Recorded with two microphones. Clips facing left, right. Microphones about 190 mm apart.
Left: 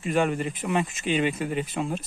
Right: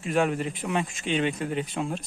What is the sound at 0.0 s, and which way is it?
Speech, centre (ahead or behind).